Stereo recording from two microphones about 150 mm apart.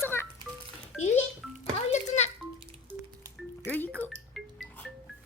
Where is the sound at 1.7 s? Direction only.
50° left (ahead or behind).